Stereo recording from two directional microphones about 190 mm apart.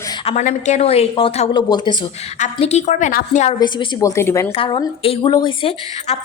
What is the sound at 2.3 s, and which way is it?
Speech, 35° left (ahead or behind).